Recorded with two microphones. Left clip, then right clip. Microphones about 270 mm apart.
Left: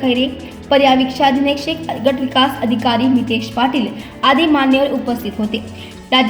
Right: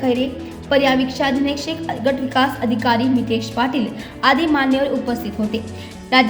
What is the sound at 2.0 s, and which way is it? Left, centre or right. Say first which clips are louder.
Speech: left 3 dB; centre.